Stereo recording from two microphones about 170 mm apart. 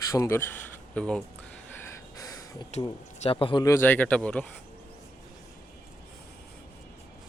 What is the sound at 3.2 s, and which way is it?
Speech, 30° left (ahead or behind).